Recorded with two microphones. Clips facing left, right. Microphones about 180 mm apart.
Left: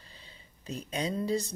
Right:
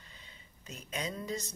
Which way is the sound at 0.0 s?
30° left (ahead or behind).